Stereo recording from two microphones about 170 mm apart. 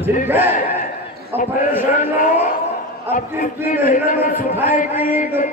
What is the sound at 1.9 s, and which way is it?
A man's voice, 55° left (ahead or behind).